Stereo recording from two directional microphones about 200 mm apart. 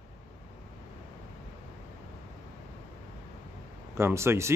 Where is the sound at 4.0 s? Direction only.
10° right (ahead or behind).